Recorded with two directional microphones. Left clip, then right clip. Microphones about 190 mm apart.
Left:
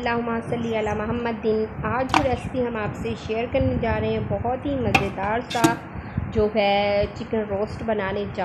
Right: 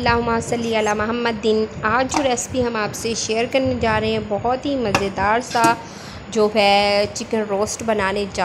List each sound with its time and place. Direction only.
0.0 s a woman's voice: 25° right (ahead or behind)